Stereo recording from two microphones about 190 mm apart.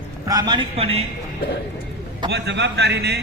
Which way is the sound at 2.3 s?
65° right (ahead or behind).